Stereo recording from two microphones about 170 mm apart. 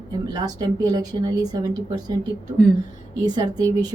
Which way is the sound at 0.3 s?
25° right (ahead or behind).